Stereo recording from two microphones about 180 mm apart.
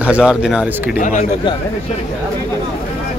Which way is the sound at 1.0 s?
45° left (ahead or behind).